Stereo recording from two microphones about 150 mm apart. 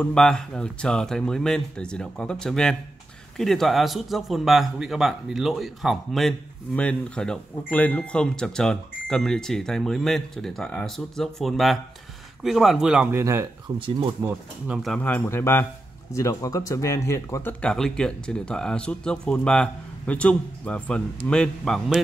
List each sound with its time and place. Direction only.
0.0 s a man's voice: 5° left (ahead or behind); by 13.5 s 20° right (ahead or behind)
13.8 s speech: 30° right (ahead or behind)
14.2 s a man's voice: 5° right (ahead or behind)
15.0 s a man's voice: 10° left (ahead or behind)